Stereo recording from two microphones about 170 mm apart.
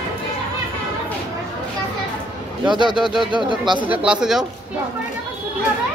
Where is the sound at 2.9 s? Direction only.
5° right (ahead or behind).